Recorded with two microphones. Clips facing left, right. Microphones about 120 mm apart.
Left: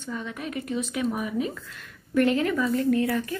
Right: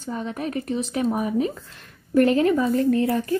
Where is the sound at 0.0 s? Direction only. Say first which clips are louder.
Right 5 dB; 40° right (ahead or behind).